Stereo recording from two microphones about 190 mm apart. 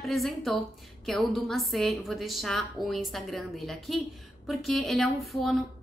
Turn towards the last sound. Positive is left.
turn(degrees=0)  # may be behind; listen again after turning